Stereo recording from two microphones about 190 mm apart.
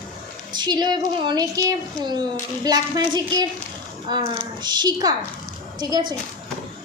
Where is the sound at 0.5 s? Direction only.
20° right (ahead or behind).